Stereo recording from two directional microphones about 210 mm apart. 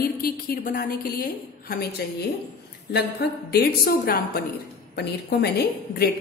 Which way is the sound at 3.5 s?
45° left (ahead or behind).